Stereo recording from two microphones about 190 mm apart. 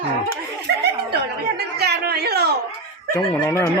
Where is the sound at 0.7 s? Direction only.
65° right (ahead or behind).